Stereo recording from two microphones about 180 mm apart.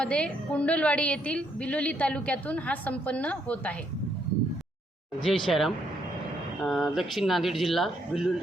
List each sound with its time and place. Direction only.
0.0 s a woman's voice: 5° left (ahead or behind)
5.2 s speech: centre (ahead or behind)